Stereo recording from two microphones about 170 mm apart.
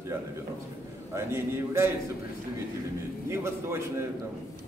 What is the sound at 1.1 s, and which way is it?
Speech, 15° right (ahead or behind).